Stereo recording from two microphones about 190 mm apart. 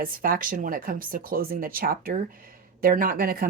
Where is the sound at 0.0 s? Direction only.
50° right (ahead or behind).